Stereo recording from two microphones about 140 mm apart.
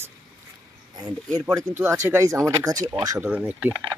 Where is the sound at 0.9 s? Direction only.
25° right (ahead or behind).